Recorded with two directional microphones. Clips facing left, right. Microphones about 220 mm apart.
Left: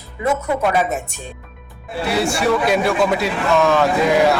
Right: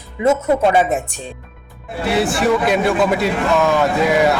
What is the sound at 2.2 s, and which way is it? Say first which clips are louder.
Speech: right 2 dB; centre (ahead or behind).